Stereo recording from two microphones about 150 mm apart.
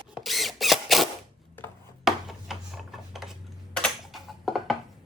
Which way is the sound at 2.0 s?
Centre (ahead or behind).